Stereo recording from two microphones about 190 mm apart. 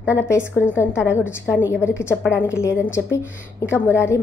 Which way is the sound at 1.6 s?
15° left (ahead or behind).